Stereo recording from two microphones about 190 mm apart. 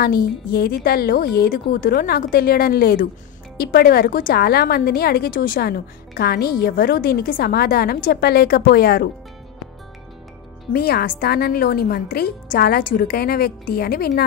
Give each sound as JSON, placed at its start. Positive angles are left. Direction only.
{"t": 0.0, "sound": "a woman's voice", "side_deg": 50}
{"t": 10.7, "sound": "a woman's voice", "side_deg": 55}